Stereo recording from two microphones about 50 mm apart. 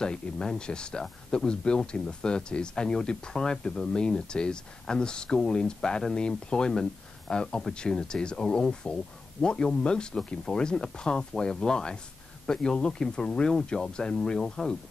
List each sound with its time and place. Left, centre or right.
0.0 s speech: centre